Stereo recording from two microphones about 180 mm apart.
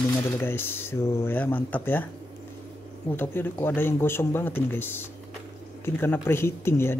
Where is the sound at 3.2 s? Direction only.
10° left (ahead or behind).